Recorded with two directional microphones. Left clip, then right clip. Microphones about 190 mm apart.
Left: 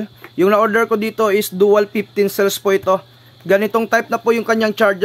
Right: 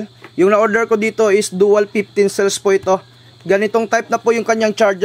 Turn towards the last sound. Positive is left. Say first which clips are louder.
# right 1 dB
turn(degrees=0)  # may be behind; listen again after turning